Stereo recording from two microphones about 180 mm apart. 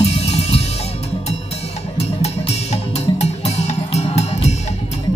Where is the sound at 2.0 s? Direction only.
35° left (ahead or behind).